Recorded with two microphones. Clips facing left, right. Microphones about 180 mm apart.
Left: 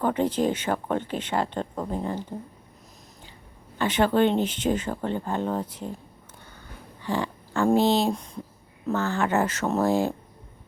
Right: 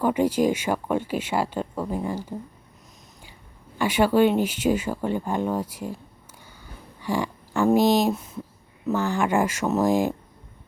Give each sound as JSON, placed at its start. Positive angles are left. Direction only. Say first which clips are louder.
{"t": 0.0, "sound": "speech", "louder": "right 3 dB", "side_deg": -10}
{"t": 3.8, "sound": "speech", "louder": "right 2 dB", "side_deg": -10}
{"t": 7.0, "sound": "a sound", "louder": "right 2 dB", "side_deg": -15}
{"t": 7.8, "sound": "speech", "louder": "right 3 dB", "side_deg": -15}
{"t": 8.1, "sound": "speech", "louder": "right 1 dB", "side_deg": -5}